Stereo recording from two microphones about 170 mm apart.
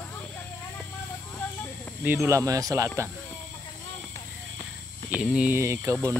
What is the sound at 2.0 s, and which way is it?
Speech, 10° right (ahead or behind).